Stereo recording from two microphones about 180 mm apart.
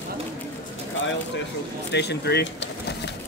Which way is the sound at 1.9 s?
65° left (ahead or behind).